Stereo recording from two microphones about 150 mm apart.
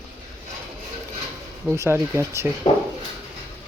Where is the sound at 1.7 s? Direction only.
15° right (ahead or behind).